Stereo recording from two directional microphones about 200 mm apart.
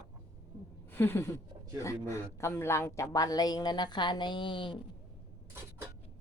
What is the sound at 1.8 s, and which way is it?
Speech, 15° left (ahead or behind).